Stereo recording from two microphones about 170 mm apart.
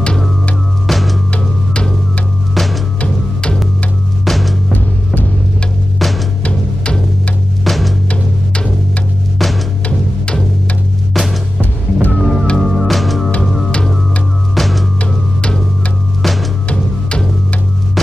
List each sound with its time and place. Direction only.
0.8 s music: centre (ahead or behind)
5.9 s music: centre (ahead or behind)